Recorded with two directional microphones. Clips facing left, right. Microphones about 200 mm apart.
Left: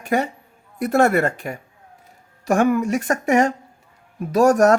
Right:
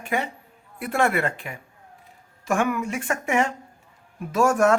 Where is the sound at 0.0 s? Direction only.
40° left (ahead or behind).